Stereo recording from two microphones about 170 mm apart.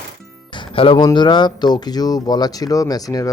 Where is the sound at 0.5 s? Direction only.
30° left (ahead or behind).